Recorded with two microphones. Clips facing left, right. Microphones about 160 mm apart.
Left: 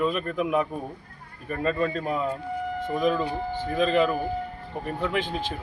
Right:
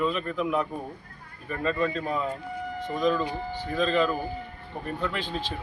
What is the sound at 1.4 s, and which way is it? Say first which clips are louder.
Speech: left 1 dB; 45° left (ahead or behind).